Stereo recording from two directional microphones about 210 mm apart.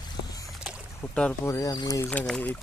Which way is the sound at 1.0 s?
5° left (ahead or behind).